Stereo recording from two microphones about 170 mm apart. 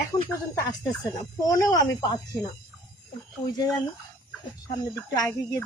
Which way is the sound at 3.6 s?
20° left (ahead or behind).